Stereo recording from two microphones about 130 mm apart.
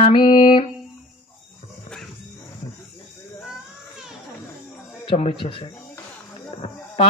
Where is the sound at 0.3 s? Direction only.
40° left (ahead or behind).